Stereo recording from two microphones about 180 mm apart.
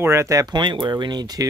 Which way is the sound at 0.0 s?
15° right (ahead or behind).